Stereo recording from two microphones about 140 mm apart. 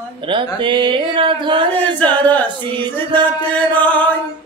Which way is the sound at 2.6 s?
35° right (ahead or behind).